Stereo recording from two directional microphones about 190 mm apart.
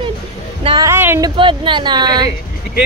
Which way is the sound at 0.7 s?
20° right (ahead or behind).